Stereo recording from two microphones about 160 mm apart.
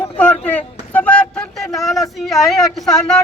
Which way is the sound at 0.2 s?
10° left (ahead or behind).